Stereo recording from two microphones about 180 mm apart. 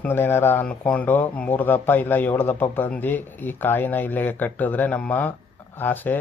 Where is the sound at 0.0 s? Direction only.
10° left (ahead or behind).